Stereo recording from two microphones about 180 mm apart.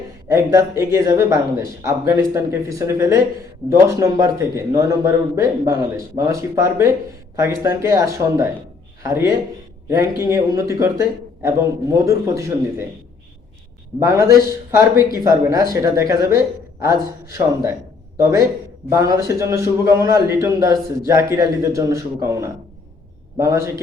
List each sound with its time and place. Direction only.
0.3 s speech: 15° right (ahead or behind)
14.0 s a man's voice: 20° right (ahead or behind)